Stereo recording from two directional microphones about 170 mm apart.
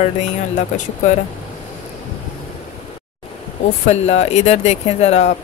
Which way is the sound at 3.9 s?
40° left (ahead or behind).